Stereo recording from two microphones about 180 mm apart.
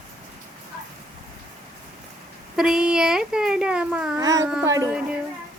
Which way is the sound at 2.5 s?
5° right (ahead or behind).